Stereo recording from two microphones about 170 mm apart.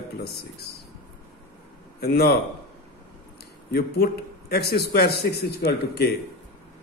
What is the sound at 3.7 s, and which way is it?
A man's voice, 65° left (ahead or behind).